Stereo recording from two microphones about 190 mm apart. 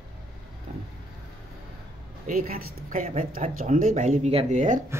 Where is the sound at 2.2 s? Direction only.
45° right (ahead or behind).